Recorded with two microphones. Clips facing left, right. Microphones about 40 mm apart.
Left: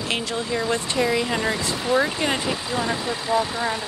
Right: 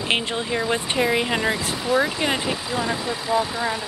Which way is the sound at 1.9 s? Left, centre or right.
Centre.